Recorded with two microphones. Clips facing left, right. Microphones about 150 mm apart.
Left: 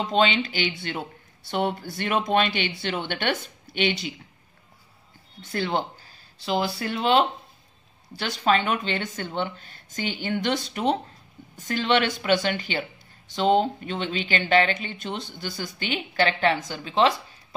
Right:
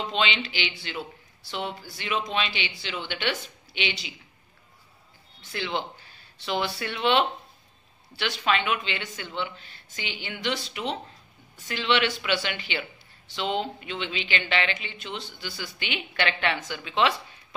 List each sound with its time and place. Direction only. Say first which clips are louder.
0.0 s speech: left 6 dB; 45° left (ahead or behind)
5.4 s speech: left 4 dB; 45° left (ahead or behind)